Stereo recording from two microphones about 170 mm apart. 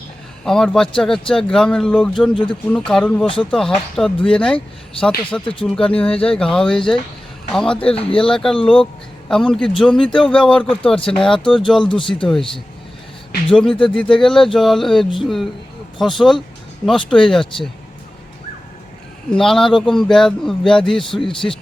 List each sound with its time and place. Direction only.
0.4 s speech: 5° left (ahead or behind)
2.3 s speech: 30° left (ahead or behind)
2.6 s speech: 5° left (ahead or behind)
13.5 s speech: 5° left (ahead or behind)
19.3 s speech: centre (ahead or behind)